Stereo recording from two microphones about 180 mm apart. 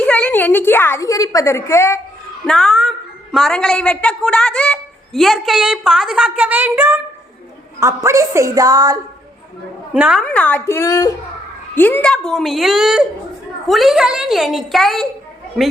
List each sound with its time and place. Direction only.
0.0 s a woman's voice: 10° left (ahead or behind)
2.5 s a woman's voice: 5° left (ahead or behind); by 9.0 s 20° right (ahead or behind)
9.9 s a woman's voice: 5° right (ahead or behind)
10.2 s a woman's voice: 10° left (ahead or behind)